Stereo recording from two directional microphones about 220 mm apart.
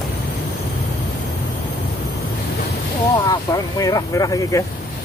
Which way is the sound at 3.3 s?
15° left (ahead or behind).